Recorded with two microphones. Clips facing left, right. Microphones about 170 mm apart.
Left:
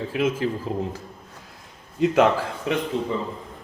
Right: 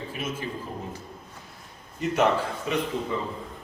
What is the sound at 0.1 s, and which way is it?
Speech, 90° left.